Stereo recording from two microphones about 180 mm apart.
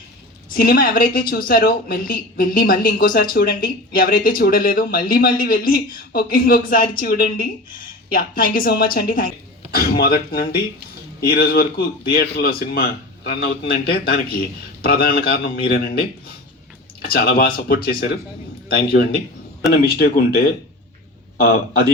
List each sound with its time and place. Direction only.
0.5 s a man's voice: 55° left (ahead or behind)